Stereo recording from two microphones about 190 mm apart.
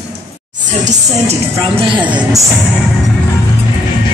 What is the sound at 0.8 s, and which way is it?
Music, 30° right (ahead or behind).